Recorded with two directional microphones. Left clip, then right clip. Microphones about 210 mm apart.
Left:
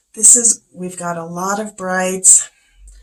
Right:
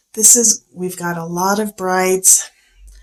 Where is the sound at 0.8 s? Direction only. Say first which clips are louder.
Left 3 dB; 40° right (ahead or behind).